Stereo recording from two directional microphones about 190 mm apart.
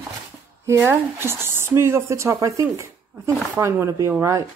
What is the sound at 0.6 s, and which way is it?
Speech, 10° right (ahead or behind).